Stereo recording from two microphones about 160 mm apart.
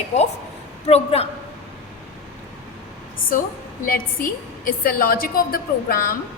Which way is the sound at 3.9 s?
60° left (ahead or behind).